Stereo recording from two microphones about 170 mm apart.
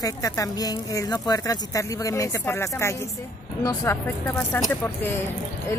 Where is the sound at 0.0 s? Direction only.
20° left (ahead or behind).